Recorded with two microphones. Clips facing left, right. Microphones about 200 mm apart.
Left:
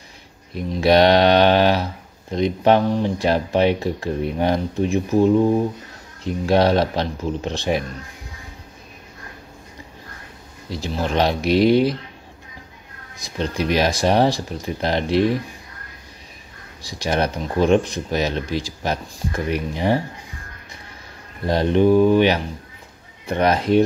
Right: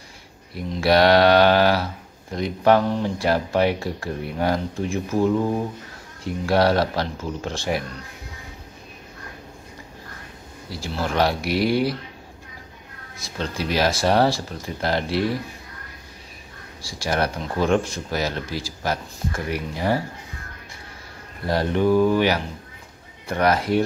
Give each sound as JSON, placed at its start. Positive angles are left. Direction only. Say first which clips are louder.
{"t": 0.6, "sound": "speech", "louder": "left 3 dB", "side_deg": 20}
{"t": 10.7, "sound": "speech", "louder": "left 3 dB", "side_deg": 20}
{"t": 13.2, "sound": "speech", "louder": "left 4 dB", "side_deg": 15}
{"t": 16.8, "sound": "speech", "louder": "left 2 dB", "side_deg": 20}
{"t": 21.5, "sound": "speech", "louder": "left 4 dB", "side_deg": 20}